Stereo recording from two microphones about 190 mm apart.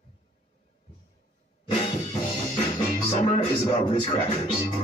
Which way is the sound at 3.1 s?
30° left (ahead or behind).